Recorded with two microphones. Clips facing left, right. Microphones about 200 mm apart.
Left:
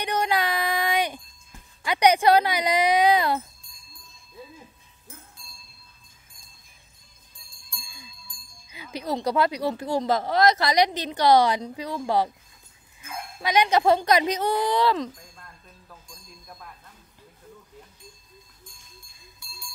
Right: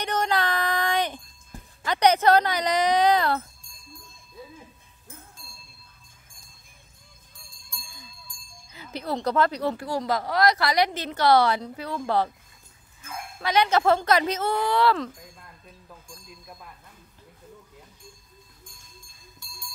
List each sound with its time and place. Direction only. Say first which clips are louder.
0.0 s a sound: even; 10° left (ahead or behind)
1.9 s speech: left 1 dB; 15° left (ahead or behind)
7.7 s cowbell: even; 10° left (ahead or behind)
8.7 s speech: left 1 dB; 15° left (ahead or behind)